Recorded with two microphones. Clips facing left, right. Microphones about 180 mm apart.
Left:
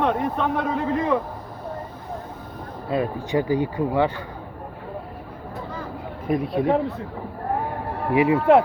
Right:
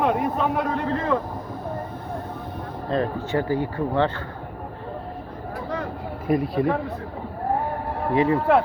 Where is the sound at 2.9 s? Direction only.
10° left (ahead or behind).